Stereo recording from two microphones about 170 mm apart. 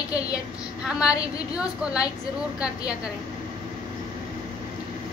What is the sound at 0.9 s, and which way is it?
A woman's voice, 5° right (ahead or behind).